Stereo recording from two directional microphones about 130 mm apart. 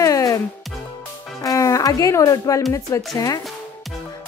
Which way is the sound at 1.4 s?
25° left (ahead or behind).